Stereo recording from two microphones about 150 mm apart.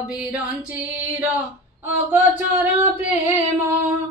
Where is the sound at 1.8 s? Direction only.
10° right (ahead or behind).